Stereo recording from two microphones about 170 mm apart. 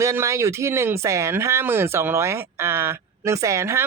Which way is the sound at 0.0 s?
15° right (ahead or behind).